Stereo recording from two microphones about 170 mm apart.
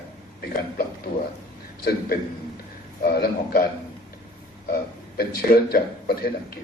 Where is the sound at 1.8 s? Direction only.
65° left (ahead or behind).